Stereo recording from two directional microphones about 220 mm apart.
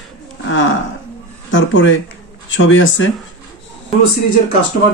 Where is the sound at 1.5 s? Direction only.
60° left (ahead or behind).